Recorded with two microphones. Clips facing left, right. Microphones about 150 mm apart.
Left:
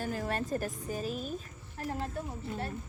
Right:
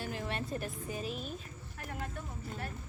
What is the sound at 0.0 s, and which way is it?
Speech, 45° left (ahead or behind).